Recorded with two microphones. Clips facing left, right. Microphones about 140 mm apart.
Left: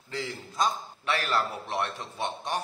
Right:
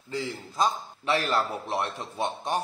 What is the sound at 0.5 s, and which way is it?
A man's voice, 30° right (ahead or behind).